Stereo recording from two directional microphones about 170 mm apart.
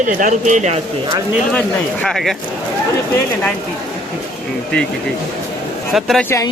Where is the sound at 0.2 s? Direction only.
45° right (ahead or behind).